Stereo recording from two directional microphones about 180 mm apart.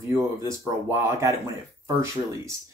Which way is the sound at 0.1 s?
15° right (ahead or behind).